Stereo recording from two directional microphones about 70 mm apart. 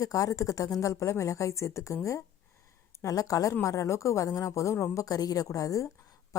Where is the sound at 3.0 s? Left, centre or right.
Left.